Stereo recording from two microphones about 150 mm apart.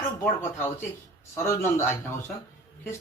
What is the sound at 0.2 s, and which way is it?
Speech, 15° left (ahead or behind).